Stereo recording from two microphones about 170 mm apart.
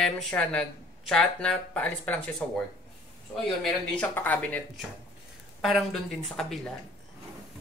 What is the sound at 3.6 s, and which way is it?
Speech, 5° left (ahead or behind).